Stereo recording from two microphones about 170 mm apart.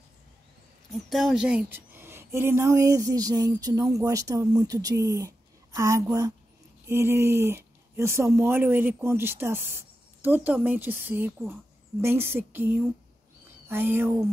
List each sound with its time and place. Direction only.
1.1 s a woman's voice: centre (ahead or behind)